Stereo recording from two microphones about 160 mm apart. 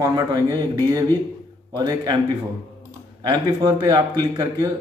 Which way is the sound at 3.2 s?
25° right (ahead or behind).